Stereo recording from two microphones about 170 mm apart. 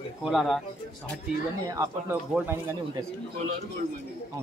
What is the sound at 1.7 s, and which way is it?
Speech, 20° right (ahead or behind).